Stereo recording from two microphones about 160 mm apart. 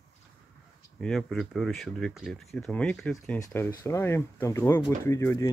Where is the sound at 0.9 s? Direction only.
Centre (ahead or behind).